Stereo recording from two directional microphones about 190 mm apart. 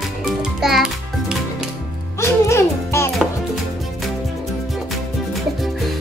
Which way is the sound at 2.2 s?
15° left (ahead or behind).